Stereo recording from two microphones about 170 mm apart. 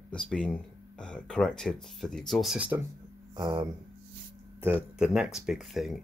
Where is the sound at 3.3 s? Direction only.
25° right (ahead or behind).